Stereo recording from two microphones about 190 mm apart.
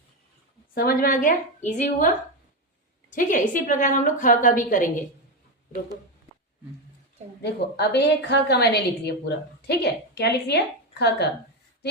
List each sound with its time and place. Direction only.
0.7 s a woman's voice: 50° left (ahead or behind)
3.1 s a woman's voice: 45° left (ahead or behind)
7.4 s a woman's voice: 60° left (ahead or behind)